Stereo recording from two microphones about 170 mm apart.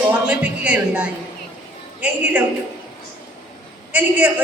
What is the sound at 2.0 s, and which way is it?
Speech, 10° right (ahead or behind).